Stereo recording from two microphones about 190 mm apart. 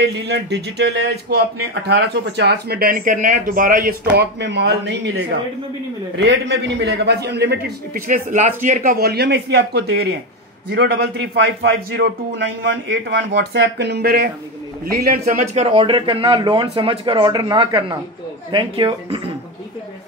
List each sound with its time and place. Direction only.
0.0 s speech: 60° right (ahead or behind)
8.1 s speech: 45° right (ahead or behind)
8.9 s speech: 55° right (ahead or behind)
15.5 s speech: 30° right (ahead or behind)